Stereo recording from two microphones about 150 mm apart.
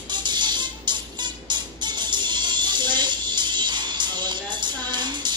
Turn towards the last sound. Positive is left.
turn(degrees=-30)  # may be behind; listen again after turning